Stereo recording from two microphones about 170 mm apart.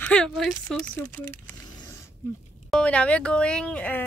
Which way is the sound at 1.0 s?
15° left (ahead or behind).